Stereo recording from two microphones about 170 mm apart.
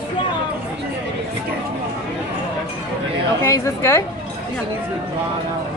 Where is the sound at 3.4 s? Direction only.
15° left (ahead or behind).